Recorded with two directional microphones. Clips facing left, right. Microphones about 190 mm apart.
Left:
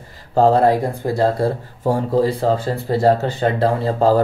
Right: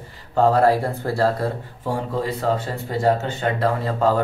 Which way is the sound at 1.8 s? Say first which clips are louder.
Left 8 dB; 40° left (ahead or behind).